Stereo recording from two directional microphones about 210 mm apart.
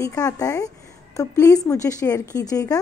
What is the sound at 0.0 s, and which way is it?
A woman's voice, 15° left (ahead or behind).